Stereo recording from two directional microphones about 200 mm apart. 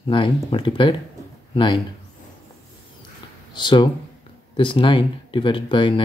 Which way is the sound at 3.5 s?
25° left (ahead or behind).